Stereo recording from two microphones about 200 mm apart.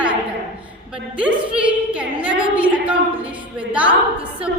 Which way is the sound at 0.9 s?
5° right (ahead or behind).